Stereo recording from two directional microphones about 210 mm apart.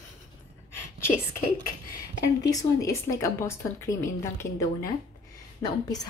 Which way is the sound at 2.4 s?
15° left (ahead or behind).